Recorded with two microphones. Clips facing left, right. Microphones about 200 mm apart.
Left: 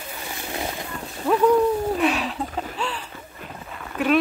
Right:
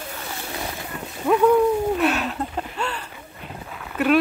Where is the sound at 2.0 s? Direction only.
Centre (ahead or behind).